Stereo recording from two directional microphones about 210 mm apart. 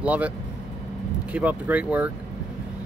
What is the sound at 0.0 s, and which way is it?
Speech, 5° right (ahead or behind).